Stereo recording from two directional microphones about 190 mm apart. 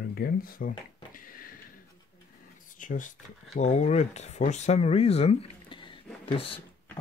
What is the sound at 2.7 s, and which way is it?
Speech, 45° left (ahead or behind).